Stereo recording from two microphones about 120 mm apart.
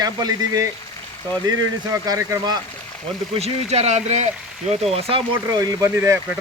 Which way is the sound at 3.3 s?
60° right (ahead or behind).